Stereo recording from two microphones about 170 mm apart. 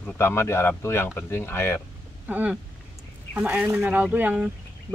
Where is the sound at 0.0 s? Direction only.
15° left (ahead or behind).